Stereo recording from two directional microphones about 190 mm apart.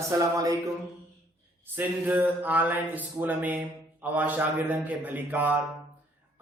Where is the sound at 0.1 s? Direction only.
20° right (ahead or behind).